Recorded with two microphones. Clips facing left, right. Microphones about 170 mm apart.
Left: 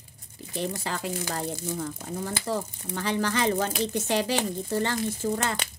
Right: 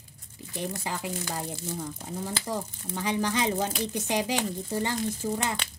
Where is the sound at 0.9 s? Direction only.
15° right (ahead or behind).